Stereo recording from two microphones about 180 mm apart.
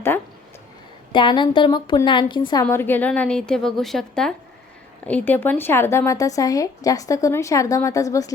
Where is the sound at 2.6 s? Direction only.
10° left (ahead or behind).